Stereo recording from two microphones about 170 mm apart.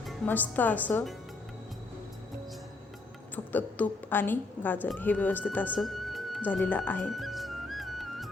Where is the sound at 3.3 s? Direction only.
10° left (ahead or behind).